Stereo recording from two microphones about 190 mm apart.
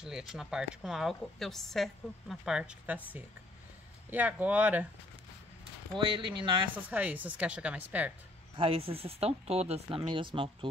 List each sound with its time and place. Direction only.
0.0 s a woman's voice: centre (ahead or behind)
5.9 s speech: 25° right (ahead or behind)
6.9 s speech: 10° right (ahead or behind)
8.5 s speech: 30° right (ahead or behind)